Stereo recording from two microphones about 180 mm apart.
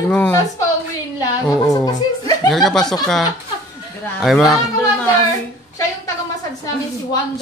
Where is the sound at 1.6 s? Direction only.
20° left (ahead or behind).